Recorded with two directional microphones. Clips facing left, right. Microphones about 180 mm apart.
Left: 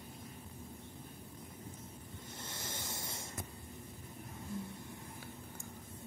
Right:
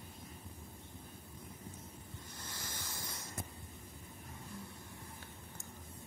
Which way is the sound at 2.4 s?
25° left (ahead or behind).